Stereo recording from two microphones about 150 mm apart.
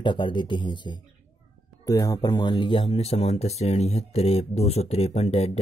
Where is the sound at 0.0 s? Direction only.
35° left (ahead or behind).